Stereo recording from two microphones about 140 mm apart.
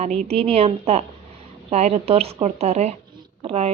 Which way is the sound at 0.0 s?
45° right (ahead or behind).